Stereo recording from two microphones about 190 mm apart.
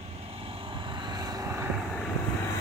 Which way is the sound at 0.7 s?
25° right (ahead or behind).